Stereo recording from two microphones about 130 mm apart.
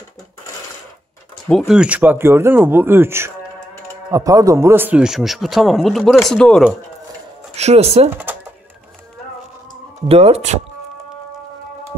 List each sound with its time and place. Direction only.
1.7 s speech: 10° right (ahead or behind)
7.5 s speech: 55° right (ahead or behind)
8.1 s speech: 15° right (ahead or behind)
10.0 s speech: 50° right (ahead or behind)